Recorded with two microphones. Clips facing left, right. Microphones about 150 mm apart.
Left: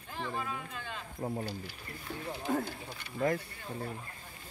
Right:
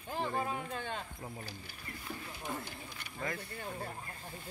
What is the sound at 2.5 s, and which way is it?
Speech, 55° left (ahead or behind).